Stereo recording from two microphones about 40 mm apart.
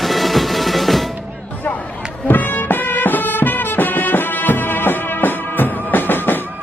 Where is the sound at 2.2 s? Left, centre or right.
Left.